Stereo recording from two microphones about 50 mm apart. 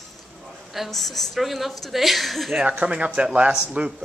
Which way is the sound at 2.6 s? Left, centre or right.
Right.